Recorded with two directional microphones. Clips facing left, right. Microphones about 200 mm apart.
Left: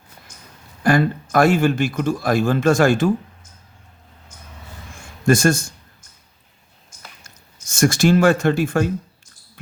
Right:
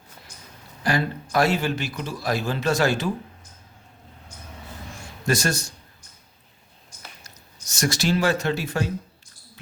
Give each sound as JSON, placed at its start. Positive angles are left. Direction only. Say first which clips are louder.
{"t": 0.8, "sound": "a man's voice", "louder": "left 7 dB", "side_deg": 50}
{"t": 5.2, "sound": "a man's voice", "louder": "left 8 dB", "side_deg": 50}
{"t": 7.3, "sound": "speech", "louder": "even", "side_deg": 50}